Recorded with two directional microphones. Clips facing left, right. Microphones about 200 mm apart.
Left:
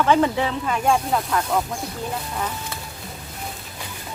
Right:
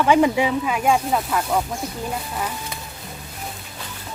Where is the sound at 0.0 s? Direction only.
10° right (ahead or behind).